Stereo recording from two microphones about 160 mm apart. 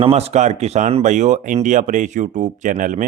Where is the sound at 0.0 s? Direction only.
40° right (ahead or behind).